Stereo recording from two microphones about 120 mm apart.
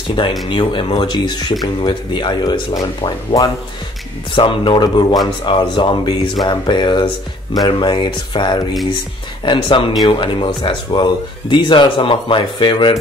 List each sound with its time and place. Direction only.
0.5 s speech: 40° left (ahead or behind)